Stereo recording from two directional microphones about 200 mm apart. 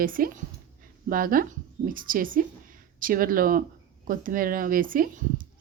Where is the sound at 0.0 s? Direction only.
45° right (ahead or behind).